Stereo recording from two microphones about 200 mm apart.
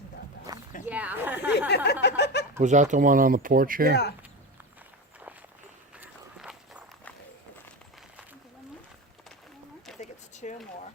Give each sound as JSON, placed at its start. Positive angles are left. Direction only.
{"t": 0.9, "sound": "speech", "side_deg": -5}
{"t": 1.6, "sound": "speech", "side_deg": 55}
{"t": 2.6, "sound": "speech", "side_deg": -35}
{"t": 6.0, "sound": "walk", "side_deg": -5}
{"t": 10.0, "sound": "a sound", "side_deg": 35}